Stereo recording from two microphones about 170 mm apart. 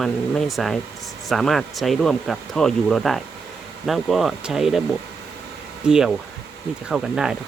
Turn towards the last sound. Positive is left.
turn(degrees=-5)  # may be behind; listen again after turning